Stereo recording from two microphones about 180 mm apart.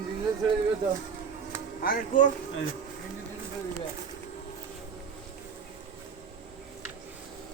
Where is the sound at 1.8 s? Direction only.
50° left (ahead or behind).